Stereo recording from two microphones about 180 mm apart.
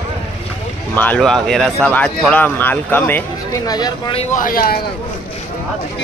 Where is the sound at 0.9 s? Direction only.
10° left (ahead or behind).